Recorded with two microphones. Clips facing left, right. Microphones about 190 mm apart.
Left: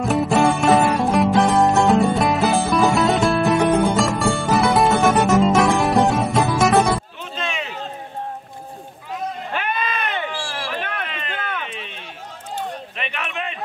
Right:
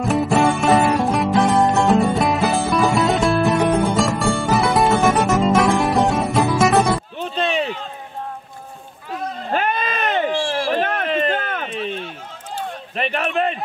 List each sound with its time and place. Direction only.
0.0 s music: centre (ahead or behind)
7.2 s music: 35° right (ahead or behind)
9.5 s a sound: 40° right (ahead or behind)